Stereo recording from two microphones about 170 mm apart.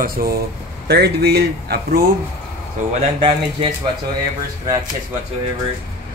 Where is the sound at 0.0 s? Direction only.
60° right (ahead or behind).